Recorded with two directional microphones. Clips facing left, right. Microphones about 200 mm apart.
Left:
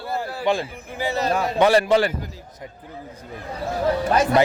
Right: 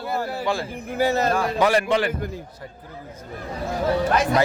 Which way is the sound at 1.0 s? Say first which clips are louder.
Right 3 dB; 45° right (ahead or behind).